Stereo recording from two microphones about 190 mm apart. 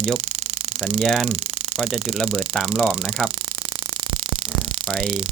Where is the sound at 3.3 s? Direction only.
25° right (ahead or behind).